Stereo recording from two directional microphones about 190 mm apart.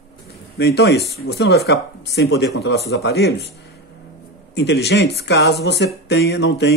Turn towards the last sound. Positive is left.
turn(degrees=60)  # may be behind; listen again after turning